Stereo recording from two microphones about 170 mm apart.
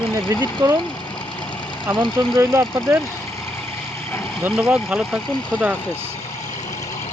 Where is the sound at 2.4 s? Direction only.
20° right (ahead or behind).